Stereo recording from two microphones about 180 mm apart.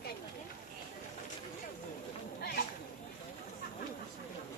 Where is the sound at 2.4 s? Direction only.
60° left (ahead or behind).